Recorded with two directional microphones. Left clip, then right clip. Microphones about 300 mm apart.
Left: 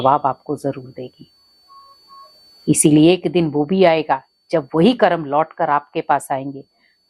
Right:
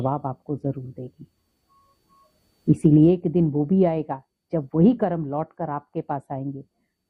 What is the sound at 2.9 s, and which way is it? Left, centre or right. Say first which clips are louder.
Speech: left 5 dB; centre.